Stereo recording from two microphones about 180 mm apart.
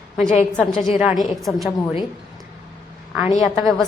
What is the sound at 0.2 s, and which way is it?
Speech, 40° left (ahead or behind).